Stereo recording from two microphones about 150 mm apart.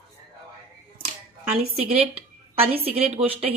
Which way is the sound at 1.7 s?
40° right (ahead or behind).